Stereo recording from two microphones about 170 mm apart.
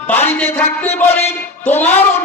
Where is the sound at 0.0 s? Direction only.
10° left (ahead or behind).